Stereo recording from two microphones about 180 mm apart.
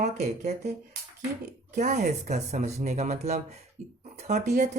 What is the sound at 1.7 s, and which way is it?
Speech, 40° right (ahead or behind).